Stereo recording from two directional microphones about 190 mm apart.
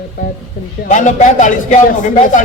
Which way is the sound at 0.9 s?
40° left (ahead or behind).